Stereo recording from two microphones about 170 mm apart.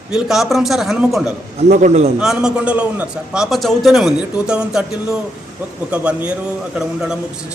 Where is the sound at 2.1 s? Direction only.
5° right (ahead or behind).